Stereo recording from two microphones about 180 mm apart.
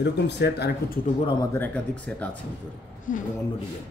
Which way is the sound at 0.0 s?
70° left (ahead or behind).